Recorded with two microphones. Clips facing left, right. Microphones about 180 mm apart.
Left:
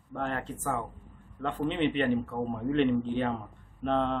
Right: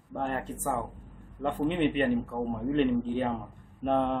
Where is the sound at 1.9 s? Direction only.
5° right (ahead or behind).